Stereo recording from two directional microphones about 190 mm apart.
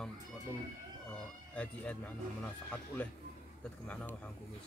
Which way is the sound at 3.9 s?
10° left (ahead or behind).